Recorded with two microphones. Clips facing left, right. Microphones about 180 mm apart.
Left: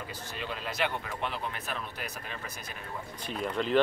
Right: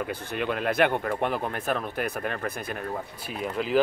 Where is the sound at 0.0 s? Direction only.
60° right (ahead or behind).